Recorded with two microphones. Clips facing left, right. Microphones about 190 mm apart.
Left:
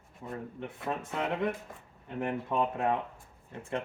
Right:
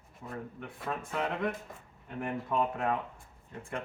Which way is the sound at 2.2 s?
20° left (ahead or behind).